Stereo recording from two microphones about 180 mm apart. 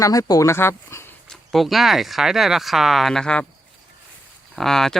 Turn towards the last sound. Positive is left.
turn(degrees=0)  # may be behind; listen again after turning